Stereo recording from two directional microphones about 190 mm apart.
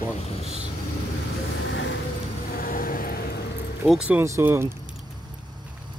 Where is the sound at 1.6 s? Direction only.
75° left (ahead or behind).